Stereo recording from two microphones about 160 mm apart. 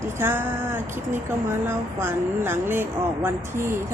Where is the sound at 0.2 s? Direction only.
15° right (ahead or behind).